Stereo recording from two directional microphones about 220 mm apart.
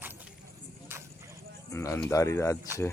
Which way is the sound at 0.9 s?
10° right (ahead or behind).